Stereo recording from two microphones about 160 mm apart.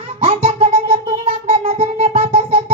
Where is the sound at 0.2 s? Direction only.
40° right (ahead or behind).